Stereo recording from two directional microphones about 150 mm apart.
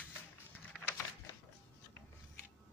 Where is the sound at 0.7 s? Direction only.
Centre (ahead or behind).